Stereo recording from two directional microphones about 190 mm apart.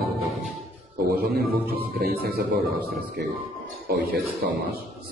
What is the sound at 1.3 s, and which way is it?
A man's voice, 55° right (ahead or behind).